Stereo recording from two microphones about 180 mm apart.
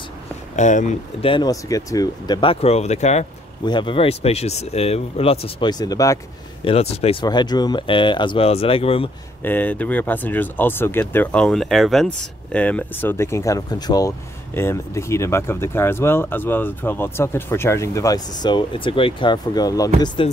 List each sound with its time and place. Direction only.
0.6 s speech: 40° left (ahead or behind)
1.3 s speech: 20° left (ahead or behind); by 3.3 s 40° left (ahead or behind)
3.6 s speech: 25° left (ahead or behind)
6.6 s speech: 35° left (ahead or behind)
9.4 s speech: 10° left (ahead or behind)